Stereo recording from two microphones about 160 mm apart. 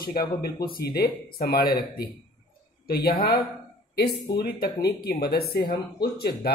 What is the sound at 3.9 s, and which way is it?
Speech, 90° left.